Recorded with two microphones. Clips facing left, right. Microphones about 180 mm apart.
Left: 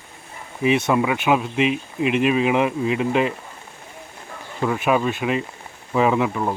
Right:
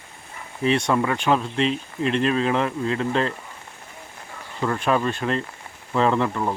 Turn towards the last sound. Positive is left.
turn(degrees=5)  # may be behind; listen again after turning